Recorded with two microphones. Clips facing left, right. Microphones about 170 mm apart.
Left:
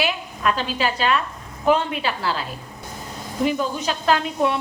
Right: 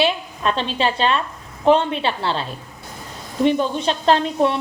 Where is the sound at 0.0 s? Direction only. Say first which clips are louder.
Right 3 dB; 25° right (ahead or behind).